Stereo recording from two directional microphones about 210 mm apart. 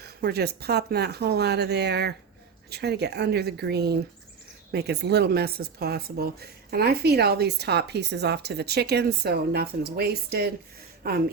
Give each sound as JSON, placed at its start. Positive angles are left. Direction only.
{"t": 0.0, "sound": "speech", "side_deg": -50}